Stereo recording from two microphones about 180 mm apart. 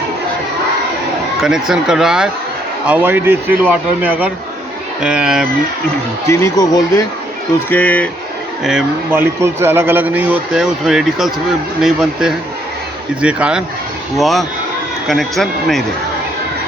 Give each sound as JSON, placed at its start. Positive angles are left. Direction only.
{"t": 1.4, "sound": "speech", "side_deg": 0}
{"t": 6.2, "sound": "speech", "side_deg": 15}
{"t": 8.6, "sound": "speech", "side_deg": -5}